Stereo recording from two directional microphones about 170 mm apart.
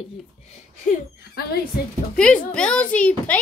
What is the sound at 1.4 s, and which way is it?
Speech, 65° left (ahead or behind).